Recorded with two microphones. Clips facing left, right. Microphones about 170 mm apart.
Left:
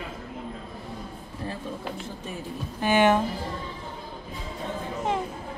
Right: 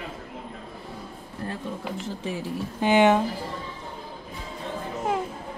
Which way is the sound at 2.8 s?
20° right (ahead or behind).